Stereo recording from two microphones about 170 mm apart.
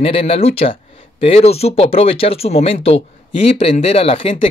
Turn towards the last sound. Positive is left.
turn(degrees=35)  # may be behind; listen again after turning